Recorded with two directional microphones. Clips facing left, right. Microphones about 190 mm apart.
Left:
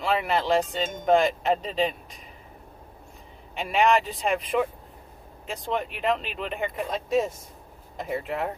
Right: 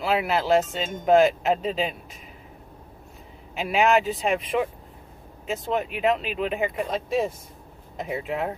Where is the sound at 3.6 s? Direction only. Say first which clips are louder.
Right 1 dB; 5° right (ahead or behind).